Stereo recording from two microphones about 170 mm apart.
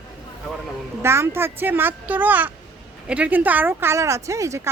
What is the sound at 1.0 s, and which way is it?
Speech, 15° right (ahead or behind).